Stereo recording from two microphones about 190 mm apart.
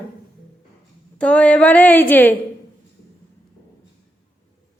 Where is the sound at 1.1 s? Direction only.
5° left (ahead or behind).